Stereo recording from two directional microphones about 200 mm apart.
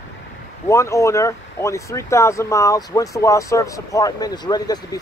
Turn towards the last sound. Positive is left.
turn(degrees=20)  # may be behind; listen again after turning